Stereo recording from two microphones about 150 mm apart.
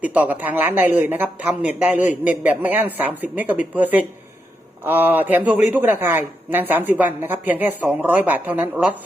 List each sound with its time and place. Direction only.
0.0 s speech: 10° right (ahead or behind)